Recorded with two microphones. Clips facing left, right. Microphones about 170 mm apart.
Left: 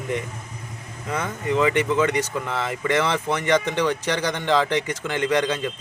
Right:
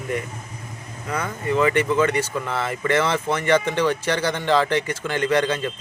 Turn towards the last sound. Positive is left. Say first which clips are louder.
# right 1 dB
turn(degrees=15)  # may be behind; listen again after turning